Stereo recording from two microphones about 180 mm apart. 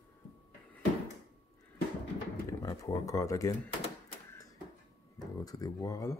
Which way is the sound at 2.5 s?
20° left (ahead or behind).